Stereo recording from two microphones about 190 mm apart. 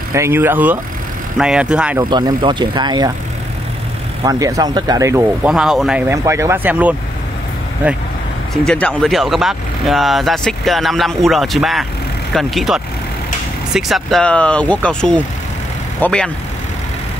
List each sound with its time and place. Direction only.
0.1 s speech: 15° right (ahead or behind)
2.0 s speech: 20° right (ahead or behind)
4.2 s speech: 20° right (ahead or behind)
8.6 s speech: 5° left (ahead or behind)